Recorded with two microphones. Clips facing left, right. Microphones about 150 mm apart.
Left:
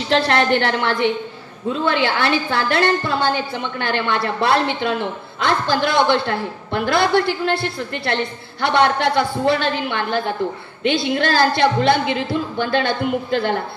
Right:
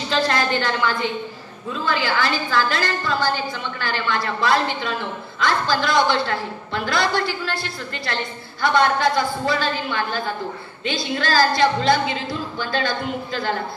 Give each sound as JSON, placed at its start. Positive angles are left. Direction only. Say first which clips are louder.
{"t": 0.1, "sound": "a woman's voice", "louder": "left 5 dB", "side_deg": 65}